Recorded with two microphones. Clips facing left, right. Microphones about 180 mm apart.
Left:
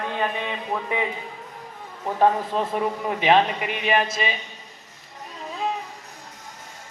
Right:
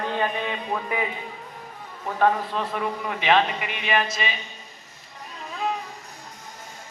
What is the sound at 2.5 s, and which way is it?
A man's voice, 35° left (ahead or behind).